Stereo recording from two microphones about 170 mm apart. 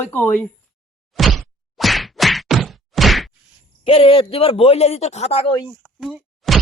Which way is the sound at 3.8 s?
35° left (ahead or behind).